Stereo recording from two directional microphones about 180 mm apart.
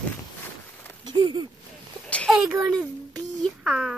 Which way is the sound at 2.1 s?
5° left (ahead or behind).